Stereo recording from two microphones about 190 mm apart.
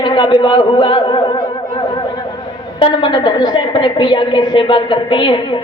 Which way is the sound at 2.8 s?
25° left (ahead or behind).